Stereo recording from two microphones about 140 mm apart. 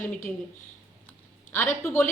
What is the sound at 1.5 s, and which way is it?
Speech, 10° left (ahead or behind).